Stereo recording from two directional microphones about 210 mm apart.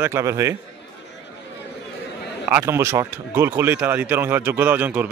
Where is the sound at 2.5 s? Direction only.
10° right (ahead or behind).